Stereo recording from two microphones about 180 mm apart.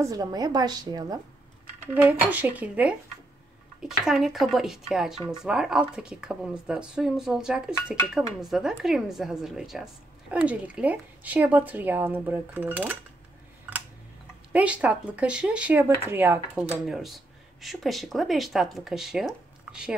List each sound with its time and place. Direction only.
0.0 s a woman's voice: 20° right (ahead or behind)
2.0 s speech: 10° right (ahead or behind)
14.5 s speech: 5° right (ahead or behind)